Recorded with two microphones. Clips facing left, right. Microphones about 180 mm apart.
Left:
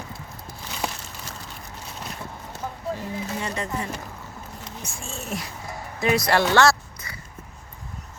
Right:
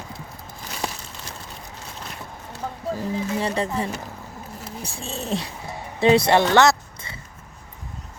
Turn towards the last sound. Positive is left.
turn(degrees=-20)  # may be behind; listen again after turning